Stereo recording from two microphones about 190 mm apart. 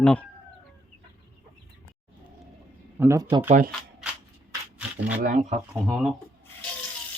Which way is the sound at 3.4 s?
40° right (ahead or behind).